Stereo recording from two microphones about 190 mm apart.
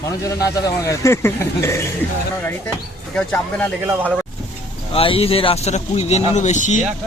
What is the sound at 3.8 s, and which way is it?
Speech, 10° right (ahead or behind).